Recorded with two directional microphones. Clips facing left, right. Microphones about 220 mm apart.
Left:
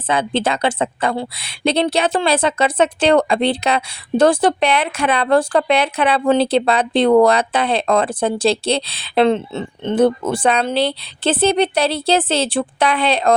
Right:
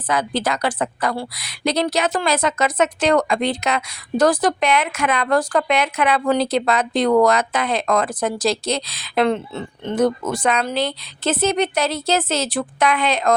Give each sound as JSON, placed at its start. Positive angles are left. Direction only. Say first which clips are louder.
{"t": 0.1, "sound": "a woman's voice", "louder": "left 3 dB", "side_deg": 25}